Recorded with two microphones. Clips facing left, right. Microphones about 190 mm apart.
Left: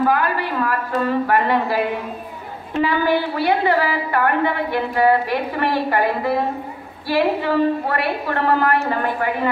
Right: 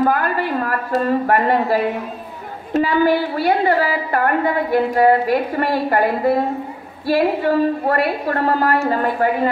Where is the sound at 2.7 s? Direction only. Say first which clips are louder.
Right 3 dB; 40° right (ahead or behind).